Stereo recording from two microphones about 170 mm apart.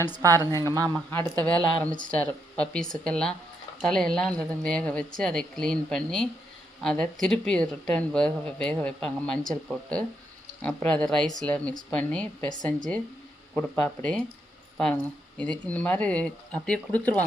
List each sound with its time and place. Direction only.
0.2 s a woman's voice: 20° right (ahead or behind)
0.9 s speech: 10° left (ahead or behind)
13.6 s speech: 10° left (ahead or behind)
15.4 s speech: 5° left (ahead or behind)